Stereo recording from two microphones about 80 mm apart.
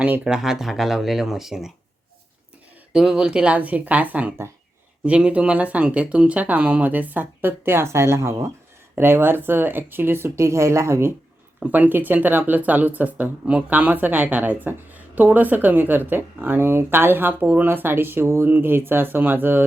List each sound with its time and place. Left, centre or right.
0.3 s speech: centre
2.9 s speech: centre; by 11.1 s right
11.6 s speech: right